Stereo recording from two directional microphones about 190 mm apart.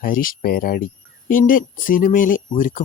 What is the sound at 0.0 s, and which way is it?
Speech, 45° left (ahead or behind).